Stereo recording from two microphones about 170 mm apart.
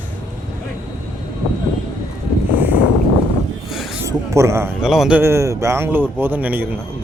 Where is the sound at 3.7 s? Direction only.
Centre (ahead or behind).